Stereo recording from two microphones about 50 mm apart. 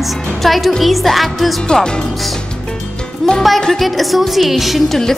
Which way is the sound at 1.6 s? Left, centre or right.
Centre.